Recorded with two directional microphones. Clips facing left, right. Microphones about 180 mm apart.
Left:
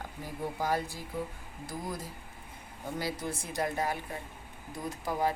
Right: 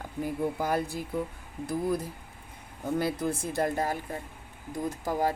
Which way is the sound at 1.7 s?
60° right (ahead or behind).